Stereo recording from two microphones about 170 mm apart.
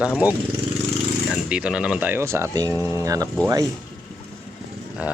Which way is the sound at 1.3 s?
5° right (ahead or behind).